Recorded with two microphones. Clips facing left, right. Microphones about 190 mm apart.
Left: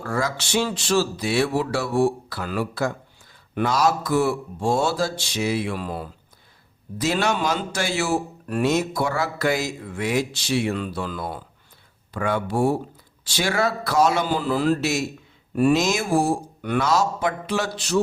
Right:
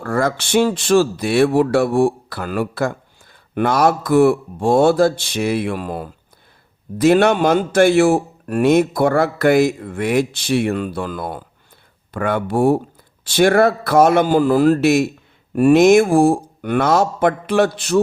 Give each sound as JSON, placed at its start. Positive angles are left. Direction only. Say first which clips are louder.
{"t": 0.0, "sound": "a man's voice", "louder": "right 6 dB", "side_deg": -55}